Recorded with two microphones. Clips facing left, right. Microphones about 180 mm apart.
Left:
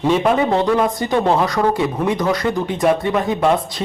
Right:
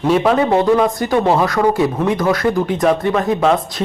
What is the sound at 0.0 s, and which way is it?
Speech, centre (ahead or behind).